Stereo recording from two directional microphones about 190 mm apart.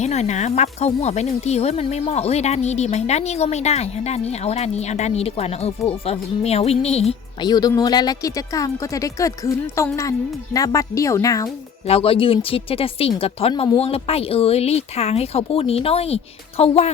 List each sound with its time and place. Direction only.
0.0 s speech: 35° left (ahead or behind); by 11.4 s 15° left (ahead or behind)
11.9 s speech: 30° left (ahead or behind)